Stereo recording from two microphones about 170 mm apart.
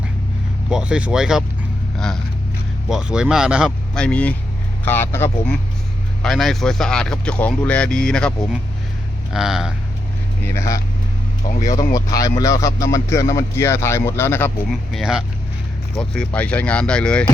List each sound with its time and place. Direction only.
0.7 s speech: 5° right (ahead or behind)
2.9 s speech: 5° right (ahead or behind); by 5.5 s 15° left (ahead or behind)
6.2 s speech: centre (ahead or behind)
10.4 s speech: 15° left (ahead or behind)
14.7 s speech: centre (ahead or behind)